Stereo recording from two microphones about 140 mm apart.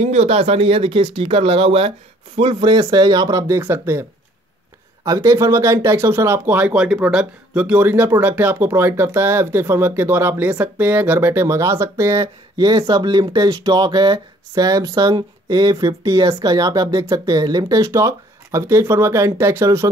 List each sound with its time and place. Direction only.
0.0 s speech: 50° right (ahead or behind); by 4.0 s 15° right (ahead or behind)
5.0 s speech: 20° right (ahead or behind)